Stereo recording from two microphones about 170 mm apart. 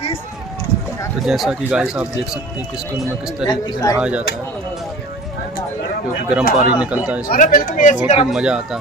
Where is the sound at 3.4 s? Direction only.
20° left (ahead or behind).